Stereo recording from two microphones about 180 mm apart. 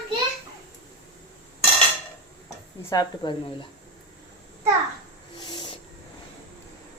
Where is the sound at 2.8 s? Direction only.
20° left (ahead or behind).